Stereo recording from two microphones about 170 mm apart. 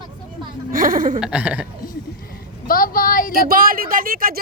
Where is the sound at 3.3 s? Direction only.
55° right (ahead or behind).